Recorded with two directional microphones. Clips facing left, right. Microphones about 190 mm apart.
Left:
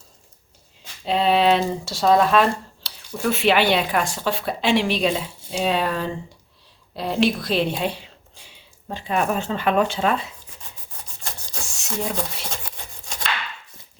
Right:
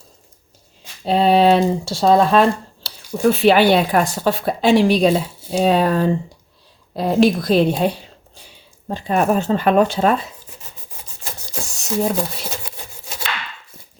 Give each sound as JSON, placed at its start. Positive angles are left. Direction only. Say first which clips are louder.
{"t": 1.0, "sound": "a woman's voice", "louder": "right 5 dB", "side_deg": -40}
{"t": 11.8, "sound": "speech", "louder": "right 7 dB", "side_deg": -40}
{"t": 12.5, "sound": "rub", "louder": "right 3 dB", "side_deg": -5}